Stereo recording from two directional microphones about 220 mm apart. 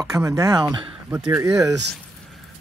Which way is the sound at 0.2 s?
15° right (ahead or behind).